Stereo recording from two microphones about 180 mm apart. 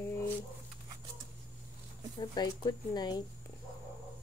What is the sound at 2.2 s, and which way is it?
Speech, 25° left (ahead or behind).